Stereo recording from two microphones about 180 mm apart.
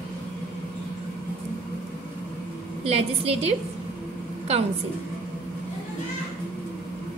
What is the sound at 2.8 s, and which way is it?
Speech, 35° right (ahead or behind).